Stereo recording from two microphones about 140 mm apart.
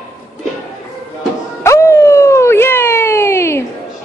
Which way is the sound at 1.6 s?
20° left (ahead or behind).